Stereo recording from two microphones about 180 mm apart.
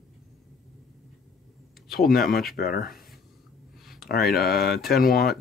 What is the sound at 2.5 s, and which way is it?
Speech, 55° left (ahead or behind).